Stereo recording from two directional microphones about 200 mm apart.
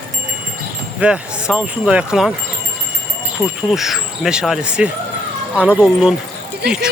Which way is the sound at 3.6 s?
Centre (ahead or behind).